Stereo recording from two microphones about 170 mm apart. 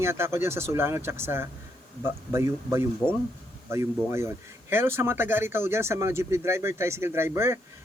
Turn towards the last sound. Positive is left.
turn(degrees=-15)  # may be behind; listen again after turning